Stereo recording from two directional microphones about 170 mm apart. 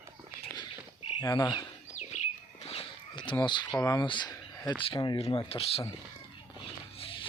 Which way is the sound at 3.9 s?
25° left (ahead or behind).